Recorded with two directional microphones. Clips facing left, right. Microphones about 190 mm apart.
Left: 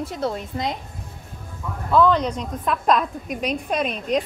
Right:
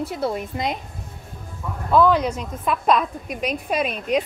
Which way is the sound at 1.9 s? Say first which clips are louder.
Right 1 dB; 10° right (ahead or behind).